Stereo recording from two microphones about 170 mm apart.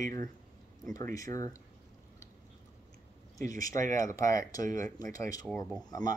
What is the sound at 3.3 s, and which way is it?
Speech, 20° left (ahead or behind).